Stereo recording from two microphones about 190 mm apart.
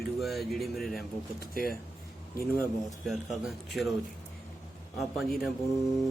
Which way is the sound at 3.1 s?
Centre (ahead or behind).